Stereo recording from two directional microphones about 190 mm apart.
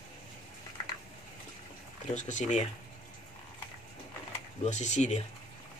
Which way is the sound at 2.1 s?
40° left (ahead or behind).